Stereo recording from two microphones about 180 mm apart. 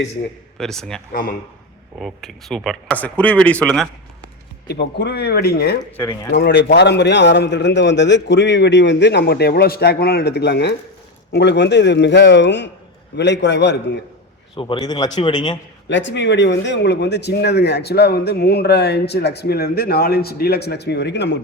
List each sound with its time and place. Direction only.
0.6 s speech: centre (ahead or behind)
1.1 s a man's voice: 50° left (ahead or behind)
2.0 s speech: centre (ahead or behind)
4.7 s speech: 70° left (ahead or behind)
5.8 s a man's voice: 20° left (ahead or behind)
6.3 s speech: 70° left (ahead or behind)
14.5 s a man's voice: 30° left (ahead or behind)
15.9 s speech: 90° left; by 21.3 s 75° left (ahead or behind)